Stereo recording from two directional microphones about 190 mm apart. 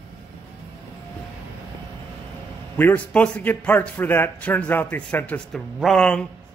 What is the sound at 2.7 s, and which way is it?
A man's voice, 10° left (ahead or behind).